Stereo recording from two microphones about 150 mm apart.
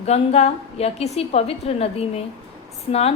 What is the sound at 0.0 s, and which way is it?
A woman's voice, 45° left (ahead or behind).